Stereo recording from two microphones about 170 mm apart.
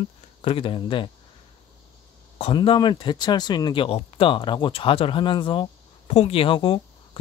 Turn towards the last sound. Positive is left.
turn(degrees=30)  # may be behind; listen again after turning